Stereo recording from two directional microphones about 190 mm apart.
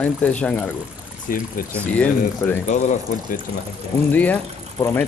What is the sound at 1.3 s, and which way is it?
Speech, 50° left (ahead or behind).